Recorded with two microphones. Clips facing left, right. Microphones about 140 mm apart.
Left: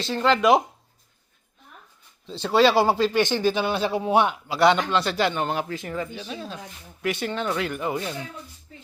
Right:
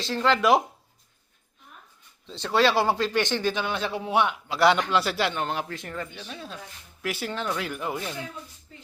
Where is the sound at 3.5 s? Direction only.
35° left (ahead or behind).